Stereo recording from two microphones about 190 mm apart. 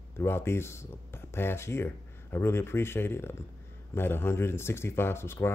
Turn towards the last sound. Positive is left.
turn(degrees=15)  # may be behind; listen again after turning